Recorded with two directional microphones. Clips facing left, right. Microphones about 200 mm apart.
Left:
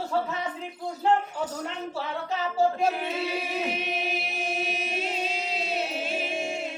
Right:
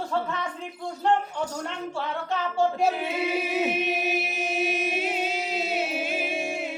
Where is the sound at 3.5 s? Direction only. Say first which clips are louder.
Right 4 dB; 5° right (ahead or behind).